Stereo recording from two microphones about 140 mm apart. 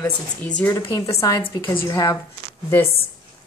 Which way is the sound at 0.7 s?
25° left (ahead or behind).